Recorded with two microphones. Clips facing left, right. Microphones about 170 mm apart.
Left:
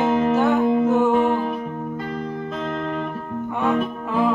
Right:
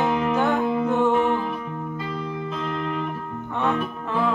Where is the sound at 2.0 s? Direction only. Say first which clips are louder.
Left 2 dB; 50° left (ahead or behind).